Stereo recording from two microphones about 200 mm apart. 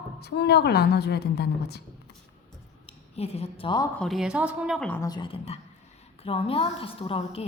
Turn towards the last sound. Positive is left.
turn(degrees=30)  # may be behind; listen again after turning